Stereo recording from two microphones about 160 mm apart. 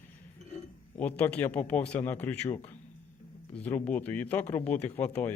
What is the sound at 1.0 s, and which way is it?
Speech, 10° left (ahead or behind).